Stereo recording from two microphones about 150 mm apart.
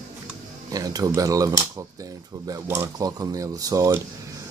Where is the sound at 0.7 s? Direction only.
25° right (ahead or behind).